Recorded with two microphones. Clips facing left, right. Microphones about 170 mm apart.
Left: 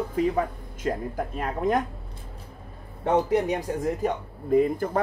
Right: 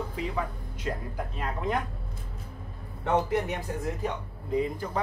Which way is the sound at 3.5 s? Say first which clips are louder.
Left 6 dB; 50° left (ahead or behind).